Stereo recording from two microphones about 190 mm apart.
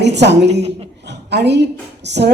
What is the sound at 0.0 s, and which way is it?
Speech, 65° right (ahead or behind).